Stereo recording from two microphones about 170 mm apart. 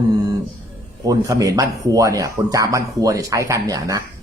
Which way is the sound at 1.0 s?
20° right (ahead or behind).